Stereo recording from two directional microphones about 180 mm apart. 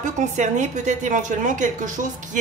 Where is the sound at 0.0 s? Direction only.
40° right (ahead or behind).